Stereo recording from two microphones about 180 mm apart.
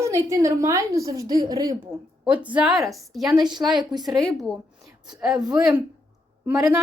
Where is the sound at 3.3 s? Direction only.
25° right (ahead or behind).